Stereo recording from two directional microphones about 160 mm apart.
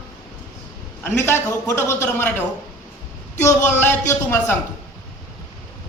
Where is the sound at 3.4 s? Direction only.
15° left (ahead or behind).